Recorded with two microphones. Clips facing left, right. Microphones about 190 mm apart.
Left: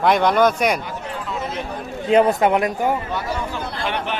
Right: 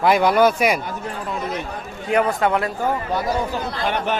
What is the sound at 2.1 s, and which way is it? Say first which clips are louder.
Speech: left 4 dB; 20° left (ahead or behind).